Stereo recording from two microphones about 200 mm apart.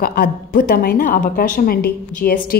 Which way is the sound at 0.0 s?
50° left (ahead or behind).